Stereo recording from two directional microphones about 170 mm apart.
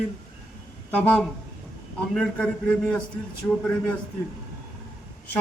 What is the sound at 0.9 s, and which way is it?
A man's voice, 10° left (ahead or behind).